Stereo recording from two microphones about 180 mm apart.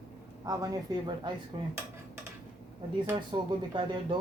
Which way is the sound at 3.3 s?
25° right (ahead or behind).